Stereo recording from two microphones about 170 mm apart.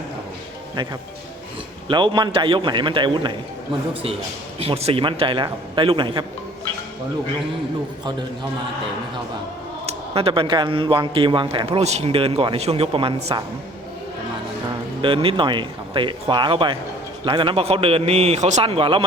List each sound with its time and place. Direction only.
1.9 s speech: 25° right (ahead or behind)
4.6 s speech: 35° right (ahead or behind)
9.8 s speech: 35° right (ahead or behind)
15.0 s speech: 30° right (ahead or behind)